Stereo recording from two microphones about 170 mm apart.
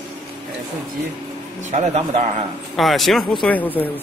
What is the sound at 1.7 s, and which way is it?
Speech, 40° right (ahead or behind).